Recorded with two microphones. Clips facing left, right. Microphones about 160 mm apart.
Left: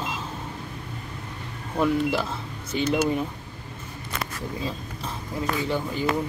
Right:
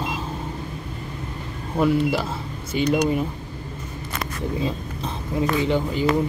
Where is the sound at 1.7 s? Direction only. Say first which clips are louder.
Right 3 dB; 10° right (ahead or behind).